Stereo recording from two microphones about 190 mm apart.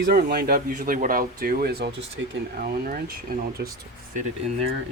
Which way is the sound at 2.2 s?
75° right (ahead or behind).